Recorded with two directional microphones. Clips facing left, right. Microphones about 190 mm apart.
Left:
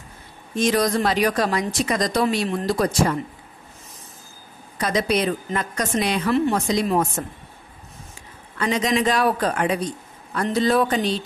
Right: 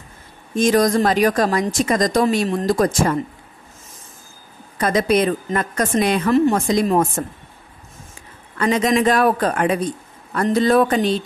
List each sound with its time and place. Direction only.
0.6 s a woman's voice: 45° right (ahead or behind)
4.7 s a woman's voice: 50° right (ahead or behind)
8.5 s a woman's voice: 55° right (ahead or behind)